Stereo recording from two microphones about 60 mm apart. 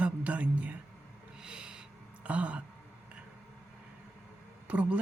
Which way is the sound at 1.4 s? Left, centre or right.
Centre.